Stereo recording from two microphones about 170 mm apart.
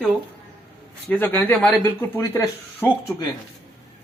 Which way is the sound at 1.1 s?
10° left (ahead or behind).